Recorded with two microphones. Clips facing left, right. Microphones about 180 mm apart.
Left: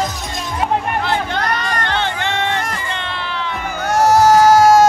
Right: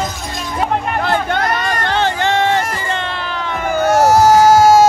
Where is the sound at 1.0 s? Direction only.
50° right (ahead or behind).